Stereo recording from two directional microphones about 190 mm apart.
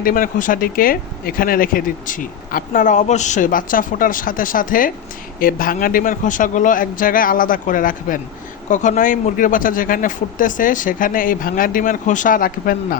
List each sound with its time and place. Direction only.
0.0 s speech: 45° left (ahead or behind)